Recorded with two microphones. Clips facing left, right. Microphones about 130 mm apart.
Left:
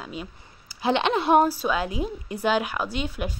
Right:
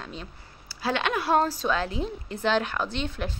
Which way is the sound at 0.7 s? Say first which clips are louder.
Left 4 dB; 20° left (ahead or behind).